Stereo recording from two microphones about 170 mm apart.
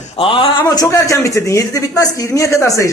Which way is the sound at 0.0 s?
30° left (ahead or behind).